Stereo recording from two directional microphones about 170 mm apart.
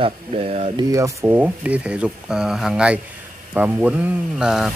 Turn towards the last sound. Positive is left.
turn(degrees=-5)  # may be behind; listen again after turning